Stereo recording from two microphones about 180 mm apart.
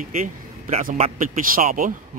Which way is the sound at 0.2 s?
40° right (ahead or behind).